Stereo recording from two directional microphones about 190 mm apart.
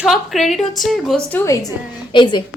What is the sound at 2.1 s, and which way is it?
Speech, 25° left (ahead or behind).